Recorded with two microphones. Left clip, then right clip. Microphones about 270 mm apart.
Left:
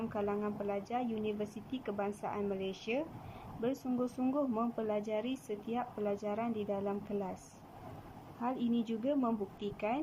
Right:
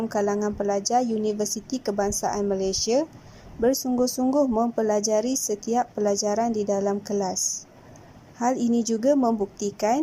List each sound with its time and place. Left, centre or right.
0.1 s a woman's voice: right
8.4 s a woman's voice: right